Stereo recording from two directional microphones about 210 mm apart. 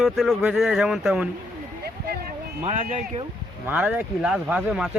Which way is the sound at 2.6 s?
35° right (ahead or behind).